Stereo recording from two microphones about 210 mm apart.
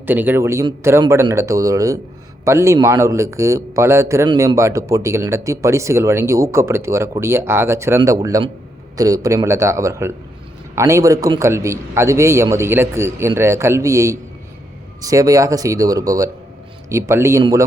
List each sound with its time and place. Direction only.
0.0 s a man's voice: 10° right (ahead or behind)